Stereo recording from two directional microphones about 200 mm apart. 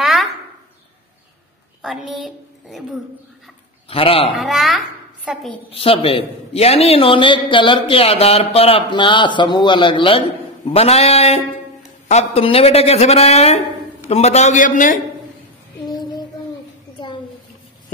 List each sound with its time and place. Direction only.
0.0 s a sound: centre (ahead or behind)
1.8 s a woman's voice: centre (ahead or behind)
3.9 s a man's voice: 30° left (ahead or behind)
4.4 s a child's voice: centre (ahead or behind)
5.7 s a man's voice: 30° left (ahead or behind)